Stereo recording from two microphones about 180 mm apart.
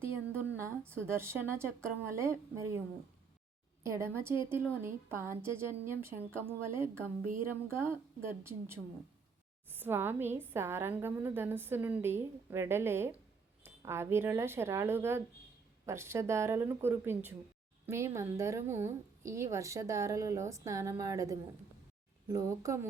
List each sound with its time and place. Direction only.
0.0 s a woman's voice: 10° right (ahead or behind)
3.8 s speech: 15° right (ahead or behind)